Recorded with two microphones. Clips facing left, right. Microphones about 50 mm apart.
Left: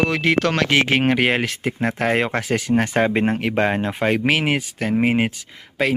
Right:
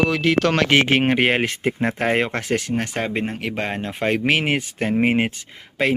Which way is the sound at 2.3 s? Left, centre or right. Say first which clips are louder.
Left 1 dB; centre.